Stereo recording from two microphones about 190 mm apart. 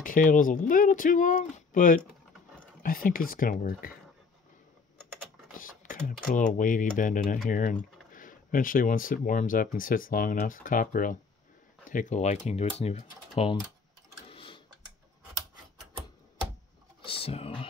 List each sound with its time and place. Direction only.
0.0 s speech: 45° left (ahead or behind)
5.5 s speech: 45° left (ahead or behind)
14.3 s sewing machine: 30° left (ahead or behind)
17.0 s speech: 30° left (ahead or behind)